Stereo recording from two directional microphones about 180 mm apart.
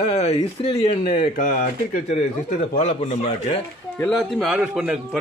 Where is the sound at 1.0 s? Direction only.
55° left (ahead or behind).